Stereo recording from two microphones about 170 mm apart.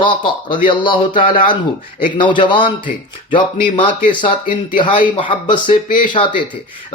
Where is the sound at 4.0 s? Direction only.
50° left (ahead or behind).